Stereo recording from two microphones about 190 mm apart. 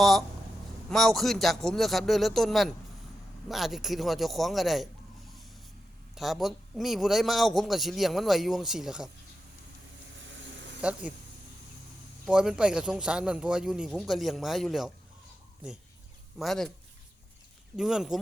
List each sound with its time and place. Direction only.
0.0 s a man's voice: centre (ahead or behind)
6.1 s a man's voice: centre (ahead or behind)
10.8 s speech: 5° right (ahead or behind)
12.2 s a man's voice: 5° right (ahead or behind)
16.4 s a man's voice: centre (ahead or behind)
17.7 s a man's voice: 5° right (ahead or behind)